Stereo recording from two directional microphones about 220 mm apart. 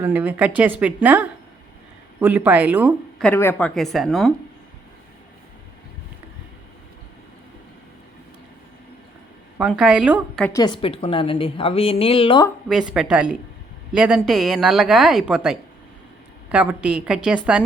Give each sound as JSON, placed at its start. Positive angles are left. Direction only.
{"t": 0.0, "sound": "speech", "side_deg": -5}
{"t": 3.2, "sound": "speech", "side_deg": 10}
{"t": 9.6, "sound": "speech", "side_deg": -5}
{"t": 10.4, "sound": "a woman's voice", "side_deg": 15}
{"t": 12.9, "sound": "speech", "side_deg": -5}